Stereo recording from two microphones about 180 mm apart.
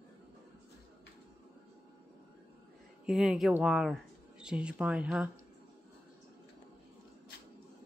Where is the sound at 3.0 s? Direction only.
5° right (ahead or behind).